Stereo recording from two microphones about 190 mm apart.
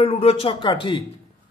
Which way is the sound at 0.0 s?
30° left (ahead or behind).